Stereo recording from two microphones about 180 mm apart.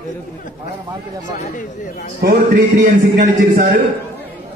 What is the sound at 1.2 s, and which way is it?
Speech, 45° left (ahead or behind).